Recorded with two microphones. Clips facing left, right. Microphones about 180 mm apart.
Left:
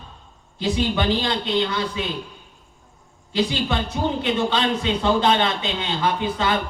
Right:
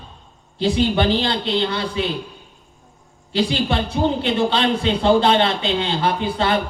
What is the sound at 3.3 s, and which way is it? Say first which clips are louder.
A man's voice: right 2 dB; 30° right (ahead or behind).